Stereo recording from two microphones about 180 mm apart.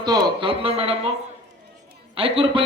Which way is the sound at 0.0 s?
25° right (ahead or behind).